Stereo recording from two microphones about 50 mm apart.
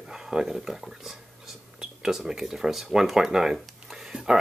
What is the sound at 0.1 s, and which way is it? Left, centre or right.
Speech, centre.